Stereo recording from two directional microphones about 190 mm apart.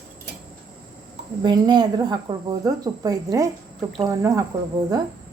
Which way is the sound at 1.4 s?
25° right (ahead or behind).